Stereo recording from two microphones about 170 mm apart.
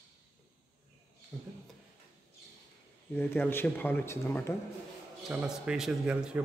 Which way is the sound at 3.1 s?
10° left (ahead or behind).